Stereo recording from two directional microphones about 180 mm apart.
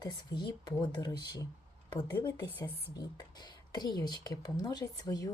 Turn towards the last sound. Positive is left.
turn(degrees=20)  # may be behind; listen again after turning